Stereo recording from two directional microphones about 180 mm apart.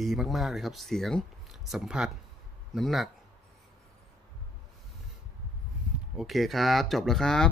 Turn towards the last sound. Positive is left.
turn(degrees=5)  # may be behind; listen again after turning